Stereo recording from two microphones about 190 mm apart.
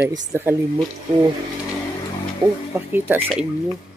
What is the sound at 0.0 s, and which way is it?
Speech, 20° right (ahead or behind).